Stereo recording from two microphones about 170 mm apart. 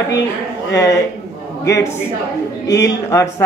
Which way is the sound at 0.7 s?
20° left (ahead or behind).